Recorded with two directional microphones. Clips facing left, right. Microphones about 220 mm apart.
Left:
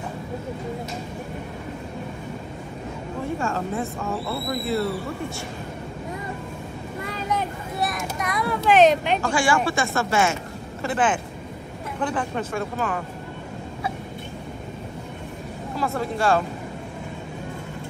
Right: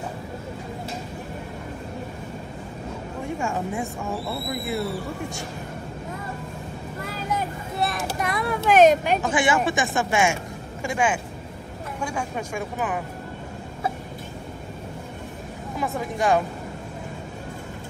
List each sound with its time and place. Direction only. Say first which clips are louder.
3.3 s speech: even; 15° right (ahead or behind)
7.1 s vehicle: left 1 dB; 5° right (ahead or behind)
7.8 s a sound: right 2 dB; 30° right (ahead or behind)
8.6 s vehicle: right 1 dB; 45° right (ahead or behind)
9.2 s a woman's voice: even; 20° right (ahead or behind)
15.7 s speech: left 2 dB; 15° right (ahead or behind)